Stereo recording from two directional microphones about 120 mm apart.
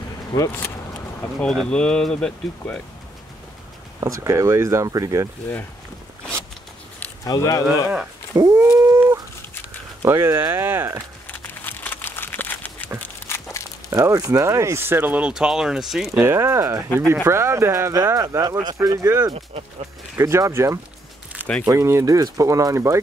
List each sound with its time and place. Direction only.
1.4 s speech: 5° left (ahead or behind)
4.0 s speech: 25° right (ahead or behind)
7.2 s speech: 30° left (ahead or behind)
7.6 s speech: 10° right (ahead or behind)
8.4 s dog: 25° right (ahead or behind)
10.0 s speech: 20° right (ahead or behind)
11.2 s crumpling: 15° left (ahead or behind)
13.0 s a sound: 25° left (ahead or behind)
13.8 s speech: 25° right (ahead or behind); by 16.1 s 5° right (ahead or behind)
16.2 s speech: 25° right (ahead or behind)